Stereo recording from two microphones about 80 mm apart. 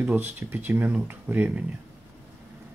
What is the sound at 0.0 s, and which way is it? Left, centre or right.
Speech, right.